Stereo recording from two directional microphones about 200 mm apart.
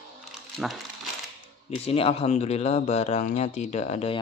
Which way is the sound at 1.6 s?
30° left (ahead or behind).